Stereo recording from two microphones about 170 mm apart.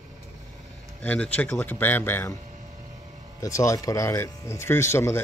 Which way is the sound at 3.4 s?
20° left (ahead or behind).